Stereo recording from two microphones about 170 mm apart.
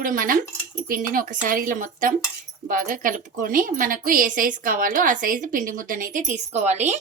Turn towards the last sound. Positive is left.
turn(degrees=-40)  # may be behind; listen again after turning